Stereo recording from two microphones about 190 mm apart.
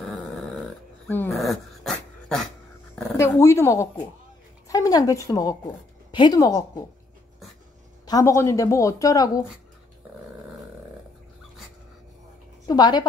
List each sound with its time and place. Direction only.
0.0 s dog: centre (ahead or behind)
1.0 s dog: 10° left (ahead or behind)
1.3 s dog: centre (ahead or behind)
3.0 s speech: 10° left (ahead or behind)
8.0 s speech: 20° left (ahead or behind)
12.6 s a woman's voice: 20° left (ahead or behind)